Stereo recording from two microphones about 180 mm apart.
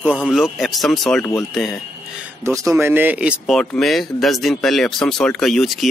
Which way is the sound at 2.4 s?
20° right (ahead or behind).